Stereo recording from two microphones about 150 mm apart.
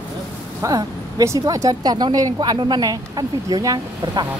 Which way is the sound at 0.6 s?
25° right (ahead or behind).